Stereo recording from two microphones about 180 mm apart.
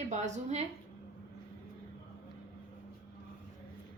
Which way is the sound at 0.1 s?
40° right (ahead or behind).